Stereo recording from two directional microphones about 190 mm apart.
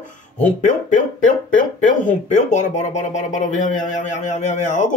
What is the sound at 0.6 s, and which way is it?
A man's voice, 40° left (ahead or behind).